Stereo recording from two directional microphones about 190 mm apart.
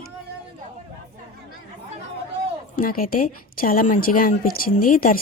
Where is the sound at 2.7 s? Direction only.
45° left (ahead or behind).